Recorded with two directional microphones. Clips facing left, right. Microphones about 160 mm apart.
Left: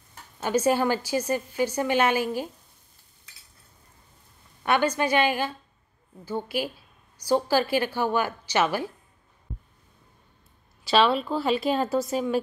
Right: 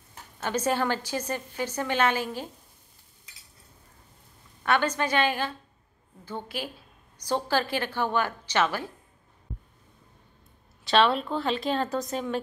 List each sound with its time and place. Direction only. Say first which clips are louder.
0.4 s a woman's voice: left 4 dB; 10° left (ahead or behind)
4.6 s a woman's voice: left 2 dB; 10° left (ahead or behind)
10.8 s a woman's voice: left 1 dB; 5° left (ahead or behind)